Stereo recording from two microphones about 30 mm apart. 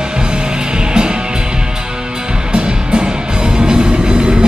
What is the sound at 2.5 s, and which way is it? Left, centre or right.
Music, right.